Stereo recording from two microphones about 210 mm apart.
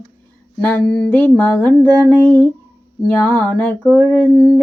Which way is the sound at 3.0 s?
10° left (ahead or behind).